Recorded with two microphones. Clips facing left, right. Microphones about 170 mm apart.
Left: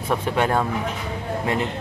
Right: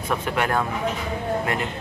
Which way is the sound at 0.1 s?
25° left (ahead or behind).